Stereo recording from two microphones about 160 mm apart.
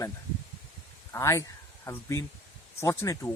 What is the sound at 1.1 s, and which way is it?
Speech, 15° left (ahead or behind).